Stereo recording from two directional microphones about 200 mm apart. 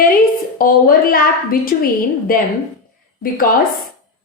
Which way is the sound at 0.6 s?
45° left (ahead or behind).